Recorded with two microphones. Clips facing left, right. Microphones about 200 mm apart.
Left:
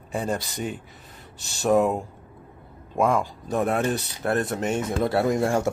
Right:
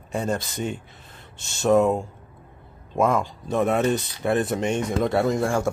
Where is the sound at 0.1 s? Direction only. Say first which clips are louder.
Right 1 dB; centre (ahead or behind).